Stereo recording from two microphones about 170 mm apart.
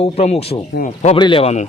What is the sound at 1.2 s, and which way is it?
Speech, 30° left (ahead or behind).